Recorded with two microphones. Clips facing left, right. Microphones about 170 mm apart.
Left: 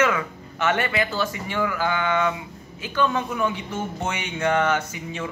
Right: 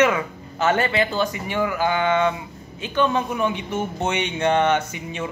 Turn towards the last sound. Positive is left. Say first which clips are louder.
# right 2 dB
turn(degrees=-20)  # may be behind; listen again after turning